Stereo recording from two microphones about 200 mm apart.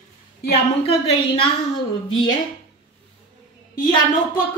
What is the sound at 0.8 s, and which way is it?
Speech, 25° left (ahead or behind).